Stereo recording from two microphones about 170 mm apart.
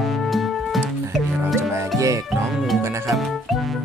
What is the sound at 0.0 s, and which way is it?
Music, centre (ahead or behind).